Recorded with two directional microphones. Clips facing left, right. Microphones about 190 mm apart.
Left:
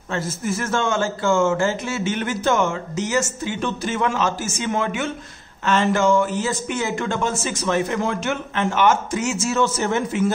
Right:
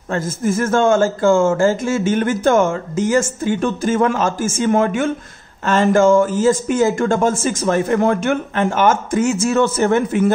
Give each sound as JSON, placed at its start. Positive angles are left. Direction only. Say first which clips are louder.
{"t": 0.1, "sound": "a man's voice", "louder": "right 6 dB", "side_deg": -50}